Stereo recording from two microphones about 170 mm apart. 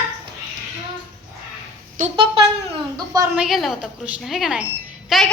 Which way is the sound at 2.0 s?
55° right (ahead or behind).